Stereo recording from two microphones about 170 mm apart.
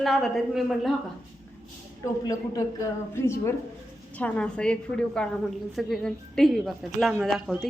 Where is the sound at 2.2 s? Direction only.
20° left (ahead or behind); by 7.7 s centre (ahead or behind).